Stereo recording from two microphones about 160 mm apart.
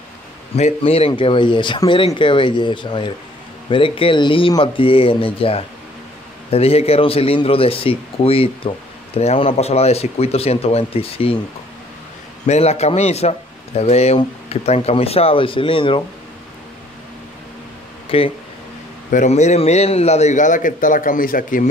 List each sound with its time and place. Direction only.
0.6 s a man's voice: 40° left (ahead or behind)
12.4 s a man's voice: 40° left (ahead or behind)
18.0 s speech: 35° left (ahead or behind)
19.0 s a man's voice: 50° left (ahead or behind)